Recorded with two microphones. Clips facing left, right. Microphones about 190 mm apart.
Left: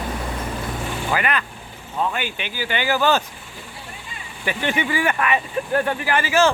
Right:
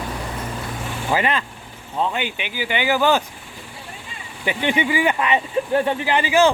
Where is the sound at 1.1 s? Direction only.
25° right (ahead or behind).